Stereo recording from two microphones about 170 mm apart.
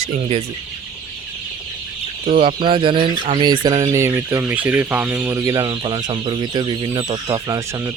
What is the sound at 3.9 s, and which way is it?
Speech, 15° right (ahead or behind).